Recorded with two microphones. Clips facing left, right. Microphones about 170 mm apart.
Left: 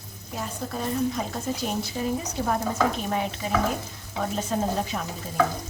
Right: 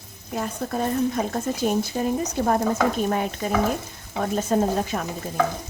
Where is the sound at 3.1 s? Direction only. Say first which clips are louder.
Right 3 dB; 50° right (ahead or behind).